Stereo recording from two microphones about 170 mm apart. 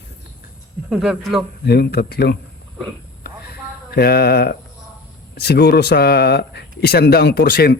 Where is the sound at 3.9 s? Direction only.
65° left (ahead or behind).